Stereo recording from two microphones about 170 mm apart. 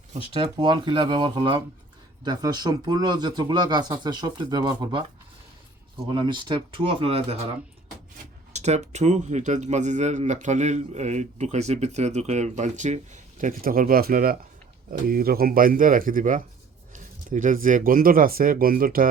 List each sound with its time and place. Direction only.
0.1 s speech: 35° right (ahead or behind)
6.1 s speech: 25° right (ahead or behind)
8.5 s speech: 40° right (ahead or behind)